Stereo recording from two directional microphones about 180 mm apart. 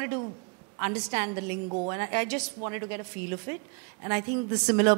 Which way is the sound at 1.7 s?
25° right (ahead or behind).